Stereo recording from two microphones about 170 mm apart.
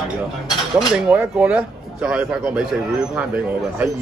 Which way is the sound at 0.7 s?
10° right (ahead or behind).